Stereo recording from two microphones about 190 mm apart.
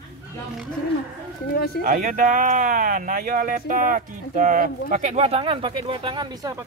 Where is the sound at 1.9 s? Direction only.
45° right (ahead or behind); by 6.6 s 20° right (ahead or behind).